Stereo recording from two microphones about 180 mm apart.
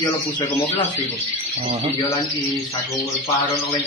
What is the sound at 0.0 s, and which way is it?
Speech, 25° left (ahead or behind).